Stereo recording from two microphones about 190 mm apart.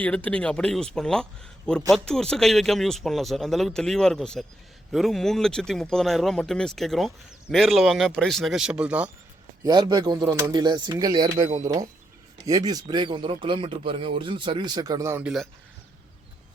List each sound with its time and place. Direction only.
0.0 s speech: 5° left (ahead or behind)
9.6 s speech: 20° right (ahead or behind)